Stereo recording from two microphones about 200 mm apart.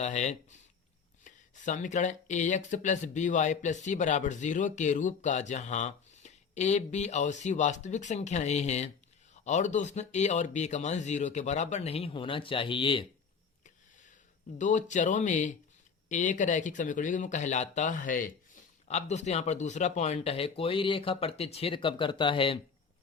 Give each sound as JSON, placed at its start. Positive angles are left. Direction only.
{"t": 0.0, "sound": "speech", "side_deg": 35}
{"t": 14.6, "sound": "speech", "side_deg": 40}